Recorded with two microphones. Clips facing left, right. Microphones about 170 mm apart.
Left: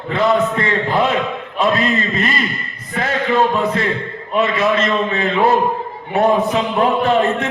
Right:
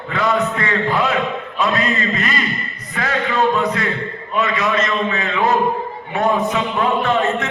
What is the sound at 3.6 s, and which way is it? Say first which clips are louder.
A man's voice: left 2 dB; 25° left (ahead or behind).